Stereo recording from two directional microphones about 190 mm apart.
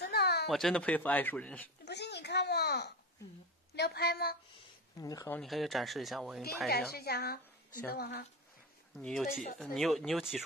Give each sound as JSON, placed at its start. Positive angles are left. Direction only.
{"t": 0.0, "sound": "a sound", "side_deg": 60}
{"t": 0.5, "sound": "speech", "side_deg": 0}
{"t": 1.9, "sound": "babbling", "side_deg": 60}
{"t": 3.7, "sound": "a woman's voice", "side_deg": 60}
{"t": 4.6, "sound": "a sound", "side_deg": 20}
{"t": 5.4, "sound": "speech", "side_deg": 0}
{"t": 6.9, "sound": "a woman's voice", "side_deg": 55}
{"t": 8.9, "sound": "speech", "side_deg": 0}